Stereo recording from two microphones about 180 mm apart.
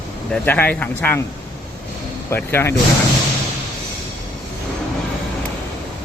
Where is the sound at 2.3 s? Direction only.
15° left (ahead or behind).